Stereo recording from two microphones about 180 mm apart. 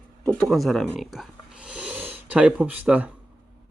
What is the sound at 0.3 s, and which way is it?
Speech, centre (ahead or behind).